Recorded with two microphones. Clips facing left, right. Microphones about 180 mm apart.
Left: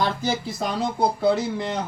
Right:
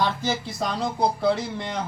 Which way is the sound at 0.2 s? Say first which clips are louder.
Left 1 dB; 5° left (ahead or behind).